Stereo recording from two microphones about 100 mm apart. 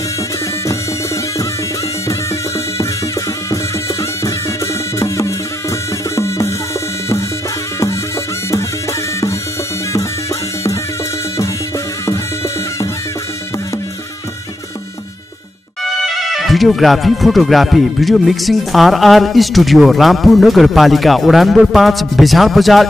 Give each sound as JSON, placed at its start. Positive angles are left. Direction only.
{"t": 4.9, "sound": "music", "side_deg": 30}
{"t": 15.8, "sound": "speech", "side_deg": 0}